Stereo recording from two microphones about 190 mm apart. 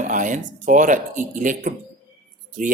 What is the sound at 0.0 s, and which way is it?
A man's voice, 45° right (ahead or behind).